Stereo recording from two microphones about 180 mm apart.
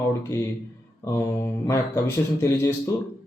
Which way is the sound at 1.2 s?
15° left (ahead or behind).